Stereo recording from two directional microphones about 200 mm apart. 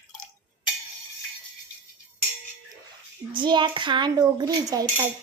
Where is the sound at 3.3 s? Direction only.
25° right (ahead or behind).